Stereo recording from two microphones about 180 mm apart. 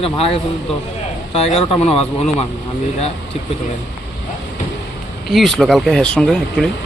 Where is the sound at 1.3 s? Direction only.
35° left (ahead or behind).